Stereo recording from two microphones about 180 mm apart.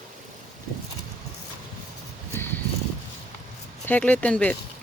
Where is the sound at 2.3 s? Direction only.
10° left (ahead or behind).